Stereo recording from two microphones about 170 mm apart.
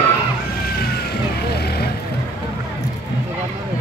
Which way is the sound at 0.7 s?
65° left (ahead or behind).